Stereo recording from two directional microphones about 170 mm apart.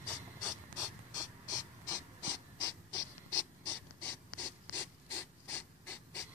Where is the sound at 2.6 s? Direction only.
20° left (ahead or behind).